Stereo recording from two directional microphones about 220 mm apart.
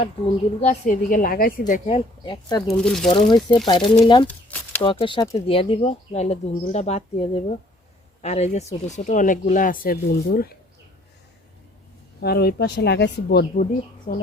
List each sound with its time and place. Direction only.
0.6 s speech: 35° left (ahead or behind)
2.7 s speech: 5° left (ahead or behind)
3.1 s speech: 20° left (ahead or behind); by 10.5 s 45° left (ahead or behind)
12.2 s speech: 45° left (ahead or behind)
14.1 s speech: 35° left (ahead or behind)